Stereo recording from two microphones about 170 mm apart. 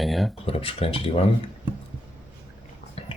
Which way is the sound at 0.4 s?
35° left (ahead or behind).